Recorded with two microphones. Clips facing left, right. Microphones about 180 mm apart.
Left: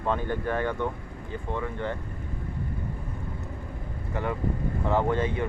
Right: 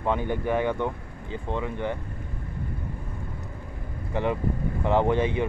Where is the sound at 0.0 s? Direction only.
15° right (ahead or behind).